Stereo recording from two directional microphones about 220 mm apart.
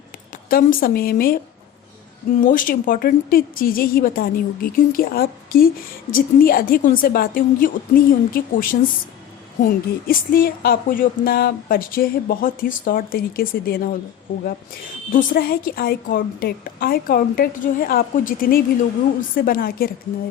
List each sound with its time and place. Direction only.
0.5 s speech: 40° left (ahead or behind)
2.4 s speech: 40° left (ahead or behind)
15.1 s speech: 40° left (ahead or behind)